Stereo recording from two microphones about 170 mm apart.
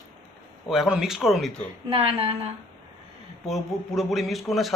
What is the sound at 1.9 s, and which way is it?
Speech, 35° right (ahead or behind).